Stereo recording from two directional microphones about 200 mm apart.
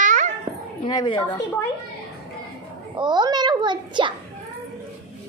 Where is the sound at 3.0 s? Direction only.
20° right (ahead or behind).